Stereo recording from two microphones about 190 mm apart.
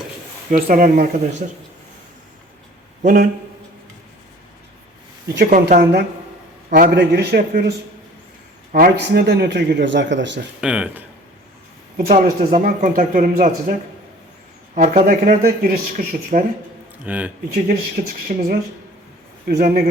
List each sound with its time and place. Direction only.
0.5 s speech: 45° right (ahead or behind)
3.0 s speech: 40° right (ahead or behind)
5.5 s speech: 40° right (ahead or behind)
5.8 s speech: 65° right (ahead or behind)
6.7 s a man's voice: 45° right (ahead or behind)
6.9 s speech: 65° right (ahead or behind)
10.6 s speech: 5° right (ahead or behind)
11.9 s speech: 45° right (ahead or behind)
14.8 s speech: 40° right (ahead or behind)
17.1 s speech: 10° right (ahead or behind)
17.5 s speech: 50° right (ahead or behind)